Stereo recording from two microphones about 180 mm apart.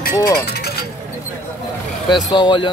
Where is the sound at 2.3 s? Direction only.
25° left (ahead or behind).